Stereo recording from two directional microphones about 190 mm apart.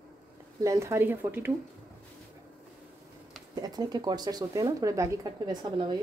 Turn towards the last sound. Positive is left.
turn(degrees=-25)  # may be behind; listen again after turning